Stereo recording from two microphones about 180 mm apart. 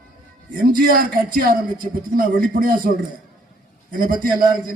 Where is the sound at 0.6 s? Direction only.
50° right (ahead or behind).